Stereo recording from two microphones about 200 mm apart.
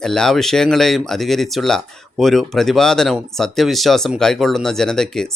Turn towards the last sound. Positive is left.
turn(degrees=5)  # may be behind; listen again after turning